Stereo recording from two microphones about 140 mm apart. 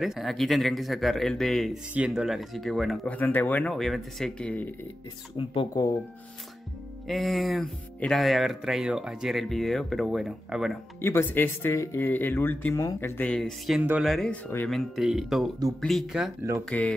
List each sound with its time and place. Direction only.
0.0 s speech: centre (ahead or behind)
3.2 s speech: 15° left (ahead or behind)
5.4 s speech: 40° left (ahead or behind)
7.1 s speech: centre (ahead or behind)
11.0 s speech: 15° left (ahead or behind)
13.3 s speech: 5° left (ahead or behind)
13.7 s speech: 10° right (ahead or behind)
14.1 s speech: 5° left (ahead or behind)
16.6 s speech: 10° left (ahead or behind)